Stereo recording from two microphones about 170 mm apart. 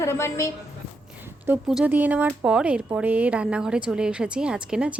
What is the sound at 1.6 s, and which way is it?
A woman's voice, 5° right (ahead or behind).